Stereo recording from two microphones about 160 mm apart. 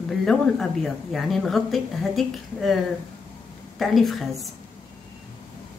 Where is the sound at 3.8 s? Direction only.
Centre (ahead or behind).